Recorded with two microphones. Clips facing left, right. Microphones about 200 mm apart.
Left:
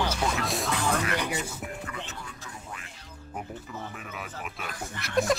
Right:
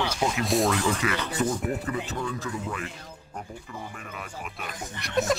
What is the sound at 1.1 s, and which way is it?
Speech, 15° left (ahead or behind).